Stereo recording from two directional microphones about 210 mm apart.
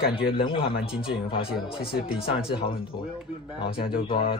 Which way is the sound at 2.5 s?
25° left (ahead or behind).